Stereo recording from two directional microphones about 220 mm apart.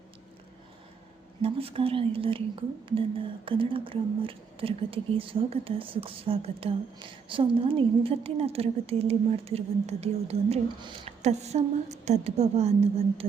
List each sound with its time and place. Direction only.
1.4 s speech: 25° right (ahead or behind)